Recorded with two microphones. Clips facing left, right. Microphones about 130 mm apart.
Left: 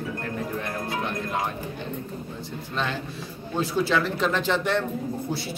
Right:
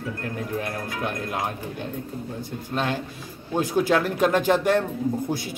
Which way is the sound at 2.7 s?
45° right (ahead or behind).